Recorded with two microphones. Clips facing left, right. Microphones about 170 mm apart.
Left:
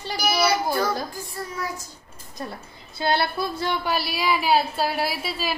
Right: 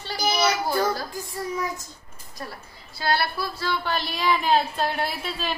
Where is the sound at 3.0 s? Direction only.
20° left (ahead or behind).